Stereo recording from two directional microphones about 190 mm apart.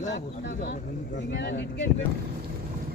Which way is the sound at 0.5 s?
45° left (ahead or behind).